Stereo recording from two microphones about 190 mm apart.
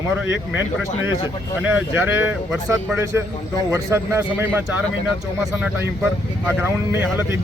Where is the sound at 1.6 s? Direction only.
10° right (ahead or behind).